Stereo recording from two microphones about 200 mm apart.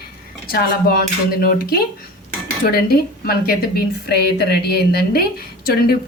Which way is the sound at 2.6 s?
50° left (ahead or behind).